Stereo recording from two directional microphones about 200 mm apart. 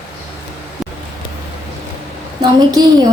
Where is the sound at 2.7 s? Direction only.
20° right (ahead or behind).